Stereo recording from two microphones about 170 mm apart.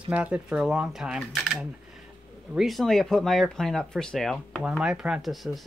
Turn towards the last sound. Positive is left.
turn(degrees=0)  # may be behind; listen again after turning